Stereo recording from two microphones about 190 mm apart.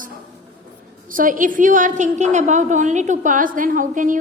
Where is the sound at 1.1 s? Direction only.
45° right (ahead or behind).